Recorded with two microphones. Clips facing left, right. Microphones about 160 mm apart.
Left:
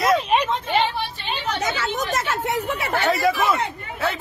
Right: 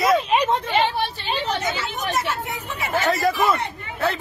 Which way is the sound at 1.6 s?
90° left.